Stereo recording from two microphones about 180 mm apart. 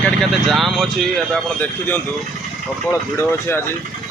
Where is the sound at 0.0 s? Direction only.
Centre (ahead or behind).